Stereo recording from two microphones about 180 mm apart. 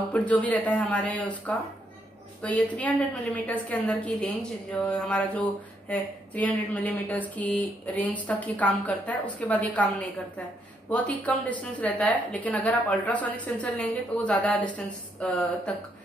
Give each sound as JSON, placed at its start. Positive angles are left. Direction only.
{"t": 0.1, "sound": "a woman's voice", "side_deg": 5}
{"t": 2.7, "sound": "a woman's voice", "side_deg": 10}